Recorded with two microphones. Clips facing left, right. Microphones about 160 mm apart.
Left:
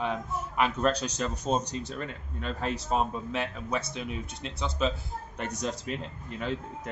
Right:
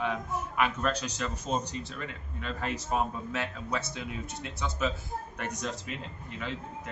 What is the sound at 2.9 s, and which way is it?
Speech, 20° left (ahead or behind).